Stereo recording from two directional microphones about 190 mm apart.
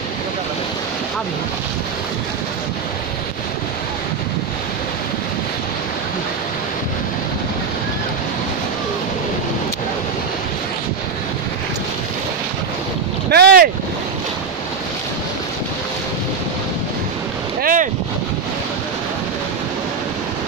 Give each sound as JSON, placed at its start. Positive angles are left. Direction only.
{"t": 13.3, "sound": "boat", "side_deg": -55}
{"t": 17.6, "sound": "boat", "side_deg": -45}